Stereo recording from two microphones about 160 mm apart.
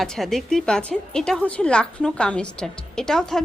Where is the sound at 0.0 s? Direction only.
Centre (ahead or behind).